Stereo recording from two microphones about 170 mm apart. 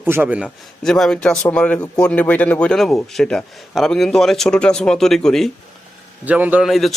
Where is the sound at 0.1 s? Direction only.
10° right (ahead or behind).